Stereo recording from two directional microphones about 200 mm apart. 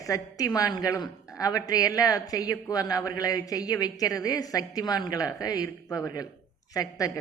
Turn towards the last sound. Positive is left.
turn(degrees=15)  # may be behind; listen again after turning